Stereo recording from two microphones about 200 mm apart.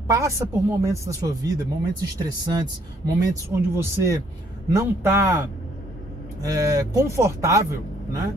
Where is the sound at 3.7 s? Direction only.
15° right (ahead or behind).